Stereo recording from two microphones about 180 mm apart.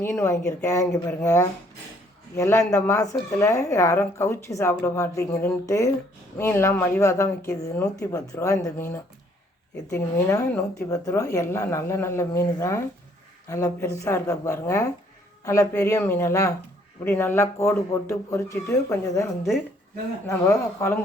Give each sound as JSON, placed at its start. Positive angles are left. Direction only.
{"t": 0.0, "sound": "speech", "side_deg": 15}